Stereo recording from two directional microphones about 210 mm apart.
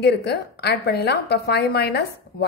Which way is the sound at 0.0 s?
55° left (ahead or behind).